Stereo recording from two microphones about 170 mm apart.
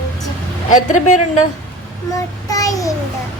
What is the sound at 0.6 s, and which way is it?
Speech, 45° left (ahead or behind).